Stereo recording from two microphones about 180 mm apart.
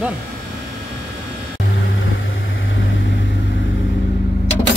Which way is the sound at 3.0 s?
90° left.